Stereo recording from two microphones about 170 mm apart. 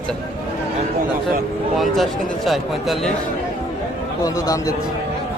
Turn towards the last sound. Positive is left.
turn(degrees=20)  # may be behind; listen again after turning